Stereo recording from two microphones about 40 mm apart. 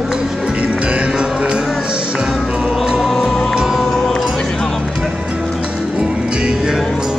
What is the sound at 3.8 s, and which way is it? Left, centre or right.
Music, centre.